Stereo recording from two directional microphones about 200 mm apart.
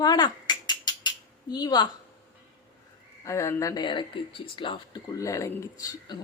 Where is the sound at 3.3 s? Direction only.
15° left (ahead or behind).